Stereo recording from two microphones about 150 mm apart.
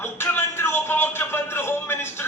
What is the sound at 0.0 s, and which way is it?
Music, 15° left (ahead or behind).